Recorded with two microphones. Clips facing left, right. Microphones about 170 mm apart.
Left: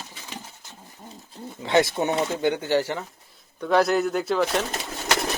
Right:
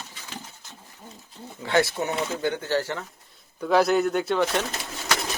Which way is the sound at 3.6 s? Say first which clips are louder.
Even; centre (ahead or behind).